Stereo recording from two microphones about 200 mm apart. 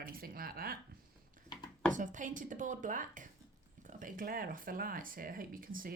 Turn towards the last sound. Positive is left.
turn(degrees=-45)  # may be behind; listen again after turning